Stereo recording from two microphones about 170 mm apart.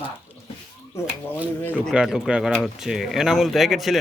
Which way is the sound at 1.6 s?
10° left (ahead or behind).